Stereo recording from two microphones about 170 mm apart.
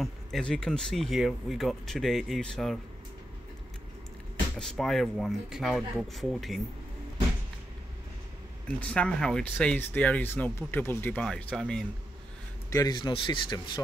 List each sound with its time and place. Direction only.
0.0 s speech: 5° left (ahead or behind)
4.6 s speech: centre (ahead or behind)
8.6 s speech: 5° left (ahead or behind)
12.6 s speech: 20° left (ahead or behind)